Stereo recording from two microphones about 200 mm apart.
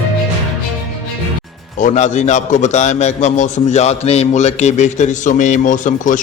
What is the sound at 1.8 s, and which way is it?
A man's voice, 35° left (ahead or behind).